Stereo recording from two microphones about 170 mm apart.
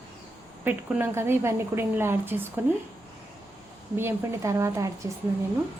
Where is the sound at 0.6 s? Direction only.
10° right (ahead or behind).